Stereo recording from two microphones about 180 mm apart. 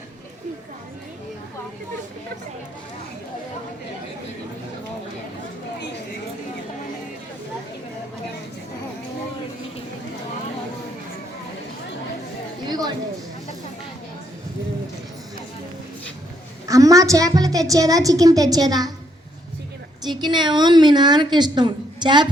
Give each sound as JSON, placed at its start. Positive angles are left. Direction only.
{"t": 12.6, "sound": "a sound", "side_deg": -20}
{"t": 16.6, "sound": "a woman's voice", "side_deg": -20}
{"t": 20.1, "sound": "a woman's voice", "side_deg": -25}